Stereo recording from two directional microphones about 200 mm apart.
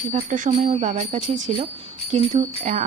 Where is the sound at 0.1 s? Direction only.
40° right (ahead or behind).